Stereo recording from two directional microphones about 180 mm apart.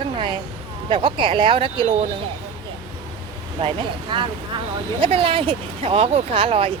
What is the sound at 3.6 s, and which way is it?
Speech, 30° right (ahead or behind).